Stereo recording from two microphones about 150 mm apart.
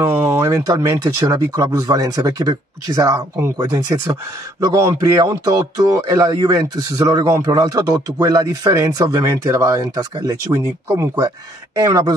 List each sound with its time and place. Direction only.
0.3 s speech: 20° right (ahead or behind)